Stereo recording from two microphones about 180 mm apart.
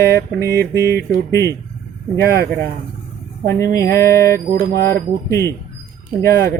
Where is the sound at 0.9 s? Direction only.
65° right (ahead or behind).